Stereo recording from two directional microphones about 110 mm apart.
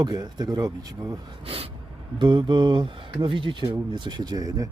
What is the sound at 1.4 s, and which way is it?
Gasp, 60° right (ahead or behind).